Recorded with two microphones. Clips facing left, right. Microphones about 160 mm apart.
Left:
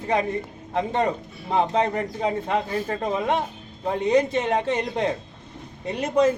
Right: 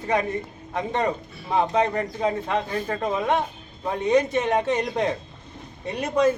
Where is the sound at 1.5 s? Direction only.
30° left (ahead or behind).